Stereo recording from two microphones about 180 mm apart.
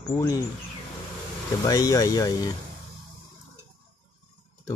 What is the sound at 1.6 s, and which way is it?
Speech, 20° left (ahead or behind).